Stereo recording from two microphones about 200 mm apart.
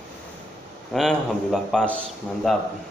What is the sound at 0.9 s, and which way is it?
Speech, centre (ahead or behind).